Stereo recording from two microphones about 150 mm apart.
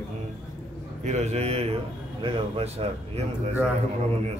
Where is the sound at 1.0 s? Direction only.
50° right (ahead or behind).